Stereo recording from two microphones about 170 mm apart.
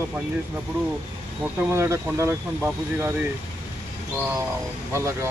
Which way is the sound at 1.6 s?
15° right (ahead or behind).